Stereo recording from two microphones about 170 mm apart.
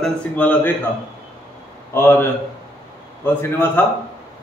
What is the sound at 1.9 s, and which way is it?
Speech, 15° left (ahead or behind).